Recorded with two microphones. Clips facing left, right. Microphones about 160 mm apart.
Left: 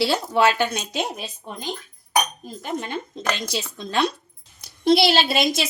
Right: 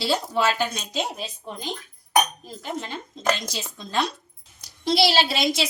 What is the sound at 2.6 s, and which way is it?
A woman's voice, 60° left (ahead or behind).